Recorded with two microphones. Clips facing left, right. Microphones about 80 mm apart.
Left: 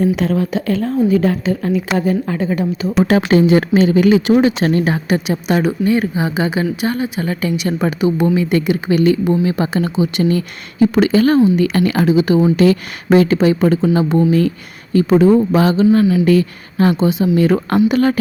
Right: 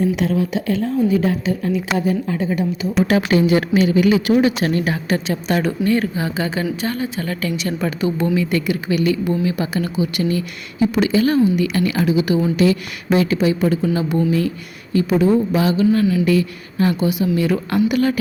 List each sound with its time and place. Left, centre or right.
0.2 s a woman's voice: left
3.0 s speech: left
5.0 s speech: centre
10.2 s a woman's voice: left
11.3 s speech: left
11.6 s a woman's voice: left
15.9 s speech: left
16.2 s speech: left
17.0 s speech: left
17.3 s a woman's voice: left